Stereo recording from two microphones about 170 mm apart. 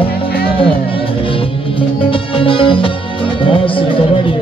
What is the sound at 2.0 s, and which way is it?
Music, 30° left (ahead or behind).